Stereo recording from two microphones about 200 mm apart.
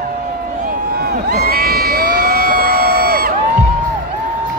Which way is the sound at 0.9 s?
50° right (ahead or behind).